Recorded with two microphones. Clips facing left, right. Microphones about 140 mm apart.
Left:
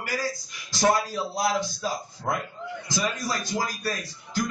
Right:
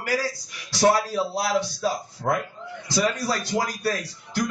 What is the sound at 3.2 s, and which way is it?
A man's voice, 65° right (ahead or behind).